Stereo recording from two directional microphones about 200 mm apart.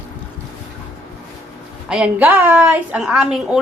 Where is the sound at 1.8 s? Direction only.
5° right (ahead or behind).